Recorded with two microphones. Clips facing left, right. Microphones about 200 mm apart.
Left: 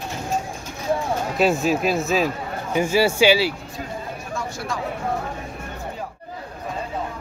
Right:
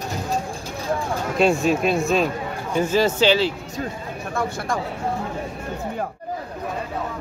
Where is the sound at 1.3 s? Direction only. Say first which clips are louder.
Right 2 dB; centre (ahead or behind).